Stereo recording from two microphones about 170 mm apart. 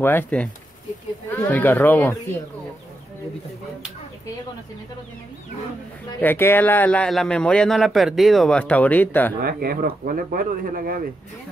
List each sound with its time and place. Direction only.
0.0 s a man's voice: 10° left (ahead or behind)
6.2 s a man's voice: 15° left (ahead or behind)
9.4 s speech: 65° right (ahead or behind)